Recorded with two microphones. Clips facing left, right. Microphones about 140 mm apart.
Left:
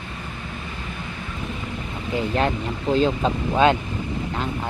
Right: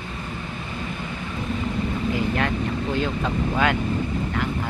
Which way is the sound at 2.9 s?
25° left (ahead or behind).